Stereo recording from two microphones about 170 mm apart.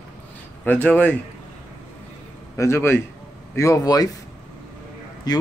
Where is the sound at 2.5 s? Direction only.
15° left (ahead or behind).